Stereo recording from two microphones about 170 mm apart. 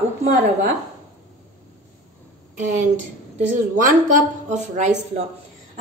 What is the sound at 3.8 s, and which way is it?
A woman's voice, 50° right (ahead or behind).